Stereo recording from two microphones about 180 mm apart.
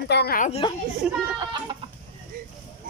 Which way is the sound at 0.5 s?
30° left (ahead or behind).